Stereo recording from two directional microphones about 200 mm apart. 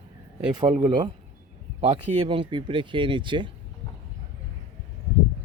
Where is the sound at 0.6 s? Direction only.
20° right (ahead or behind).